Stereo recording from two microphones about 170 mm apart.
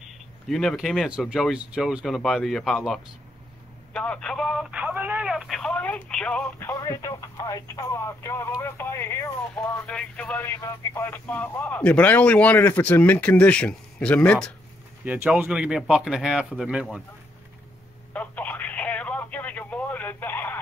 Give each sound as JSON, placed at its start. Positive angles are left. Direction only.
{"t": 0.5, "sound": "speech", "side_deg": 0}
{"t": 3.9, "sound": "telephone", "side_deg": 5}
{"t": 6.7, "sound": "speech", "side_deg": 20}
{"t": 15.0, "sound": "speech", "side_deg": -10}
{"t": 18.1, "sound": "telephone", "side_deg": 10}